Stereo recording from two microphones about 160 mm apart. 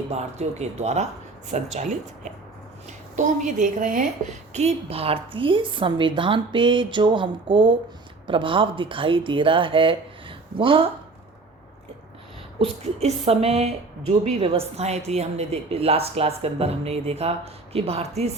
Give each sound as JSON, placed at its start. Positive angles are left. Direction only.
{"t": 0.1, "sound": "a woman's voice", "side_deg": -45}
{"t": 12.5, "sound": "a woman's voice", "side_deg": -40}